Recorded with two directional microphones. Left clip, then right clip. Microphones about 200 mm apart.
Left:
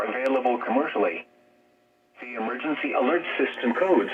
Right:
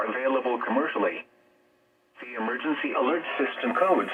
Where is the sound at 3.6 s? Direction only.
15° left (ahead or behind).